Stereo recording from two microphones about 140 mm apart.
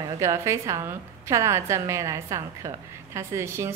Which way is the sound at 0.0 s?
20° right (ahead or behind).